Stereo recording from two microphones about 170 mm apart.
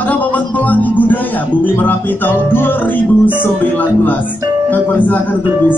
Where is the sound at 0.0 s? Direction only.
10° left (ahead or behind).